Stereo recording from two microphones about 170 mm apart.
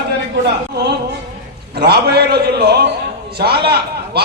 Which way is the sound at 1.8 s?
70° right (ahead or behind).